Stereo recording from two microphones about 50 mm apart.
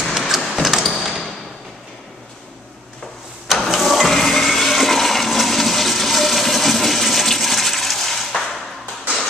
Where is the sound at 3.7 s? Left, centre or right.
Centre.